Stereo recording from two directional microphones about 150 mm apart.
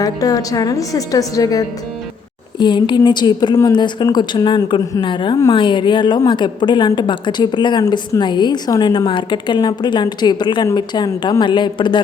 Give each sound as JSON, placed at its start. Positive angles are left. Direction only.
{"t": 0.0, "sound": "a woman's voice", "side_deg": 25}